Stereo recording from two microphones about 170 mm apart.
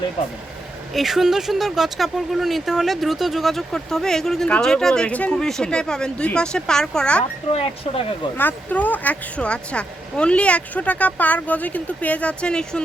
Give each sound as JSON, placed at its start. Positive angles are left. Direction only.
{"t": 0.9, "sound": "speech", "side_deg": 0}
{"t": 7.5, "sound": "speech", "side_deg": 35}
{"t": 8.4, "sound": "speech", "side_deg": 10}